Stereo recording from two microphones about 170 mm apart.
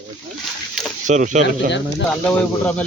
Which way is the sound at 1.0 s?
45° right (ahead or behind).